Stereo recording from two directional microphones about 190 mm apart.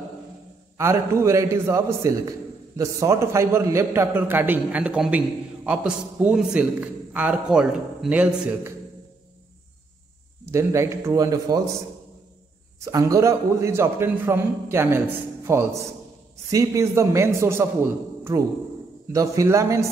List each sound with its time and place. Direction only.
0.7 s a man's voice: 15° right (ahead or behind)
10.5 s a man's voice: 15° right (ahead or behind)
12.8 s a man's voice: 15° right (ahead or behind)